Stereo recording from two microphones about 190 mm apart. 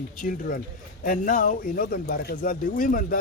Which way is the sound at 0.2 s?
45° left (ahead or behind).